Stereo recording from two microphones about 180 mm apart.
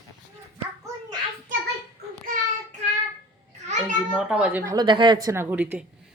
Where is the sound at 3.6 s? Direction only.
40° right (ahead or behind).